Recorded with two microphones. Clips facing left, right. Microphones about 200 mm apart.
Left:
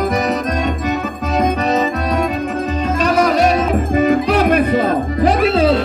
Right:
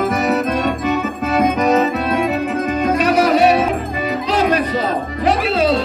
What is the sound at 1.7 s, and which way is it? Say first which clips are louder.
Music: right 2 dB; 5° right (ahead or behind).